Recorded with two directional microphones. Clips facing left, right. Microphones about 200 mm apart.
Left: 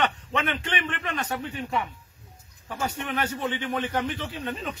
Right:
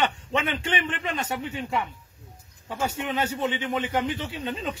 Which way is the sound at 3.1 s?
20° right (ahead or behind).